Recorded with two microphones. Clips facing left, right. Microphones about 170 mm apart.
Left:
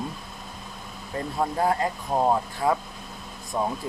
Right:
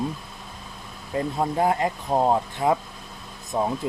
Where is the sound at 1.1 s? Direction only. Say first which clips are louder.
Right 3 dB; 20° right (ahead or behind).